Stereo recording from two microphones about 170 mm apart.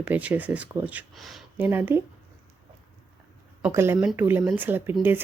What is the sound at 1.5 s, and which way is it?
Speech, 10° right (ahead or behind).